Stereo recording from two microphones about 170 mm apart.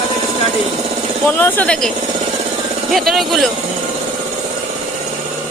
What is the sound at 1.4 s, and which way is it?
Speech, 10° left (ahead or behind).